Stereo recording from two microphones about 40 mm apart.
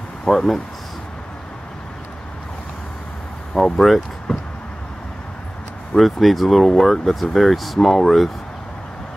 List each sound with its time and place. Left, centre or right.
0.2 s a sound: centre
3.5 s speech: centre
5.9 s speech: centre